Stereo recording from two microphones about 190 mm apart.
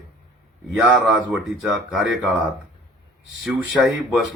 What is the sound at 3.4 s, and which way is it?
Speech, centre (ahead or behind).